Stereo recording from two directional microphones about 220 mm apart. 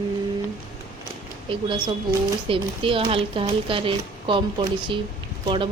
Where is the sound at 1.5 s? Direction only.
25° right (ahead or behind).